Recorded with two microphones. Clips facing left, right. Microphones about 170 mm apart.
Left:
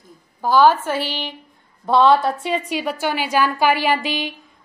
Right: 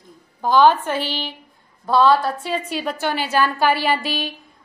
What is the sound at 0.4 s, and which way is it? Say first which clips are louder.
Speech: even; 10° left (ahead or behind).